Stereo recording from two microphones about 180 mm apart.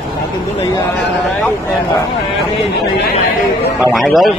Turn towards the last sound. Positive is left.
turn(degrees=0)  # may be behind; listen again after turning